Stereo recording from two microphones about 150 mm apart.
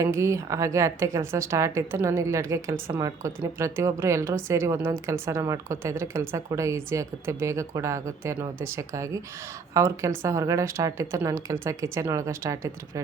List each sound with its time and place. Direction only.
0.0 s a woman's voice: 20° right (ahead or behind)